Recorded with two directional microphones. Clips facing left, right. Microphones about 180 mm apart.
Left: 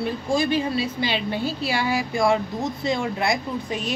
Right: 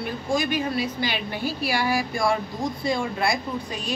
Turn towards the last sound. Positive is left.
turn(degrees=20)  # may be behind; listen again after turning